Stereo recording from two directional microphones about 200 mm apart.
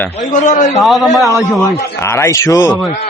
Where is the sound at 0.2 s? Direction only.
40° left (ahead or behind).